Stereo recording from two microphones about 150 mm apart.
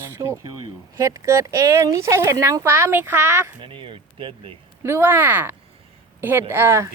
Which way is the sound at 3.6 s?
35° right (ahead or behind).